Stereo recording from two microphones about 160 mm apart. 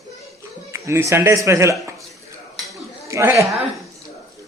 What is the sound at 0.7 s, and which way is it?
Speech, 15° right (ahead or behind).